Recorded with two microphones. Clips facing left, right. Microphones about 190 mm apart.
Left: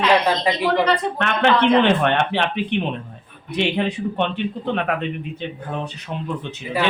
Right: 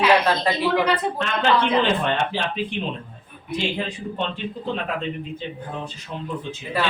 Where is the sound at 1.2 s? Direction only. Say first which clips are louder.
Left 4 dB; 65° left (ahead or behind).